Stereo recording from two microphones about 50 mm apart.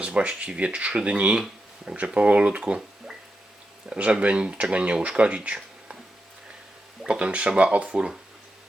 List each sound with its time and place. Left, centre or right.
0.0 s speech: right
3.8 s speech: right
7.1 s speech: right